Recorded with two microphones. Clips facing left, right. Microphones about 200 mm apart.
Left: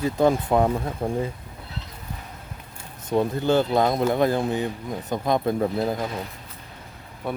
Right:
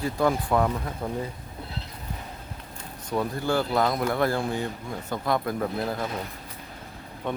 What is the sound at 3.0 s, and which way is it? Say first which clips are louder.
Speech: left 5 dB; 25° left (ahead or behind).